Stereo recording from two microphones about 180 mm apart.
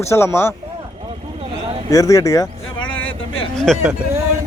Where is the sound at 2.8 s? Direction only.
90° left.